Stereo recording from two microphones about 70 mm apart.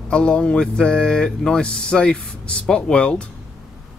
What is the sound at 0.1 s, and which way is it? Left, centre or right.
Speech, centre.